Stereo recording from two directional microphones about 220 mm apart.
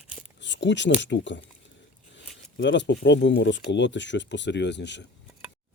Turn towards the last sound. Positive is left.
turn(degrees=50)  # may be behind; listen again after turning